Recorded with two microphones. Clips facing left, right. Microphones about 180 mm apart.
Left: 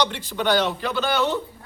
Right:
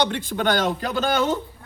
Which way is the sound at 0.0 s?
50° right (ahead or behind).